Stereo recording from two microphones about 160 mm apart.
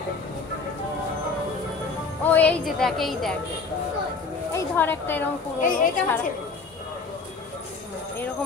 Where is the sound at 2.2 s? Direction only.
10° left (ahead or behind).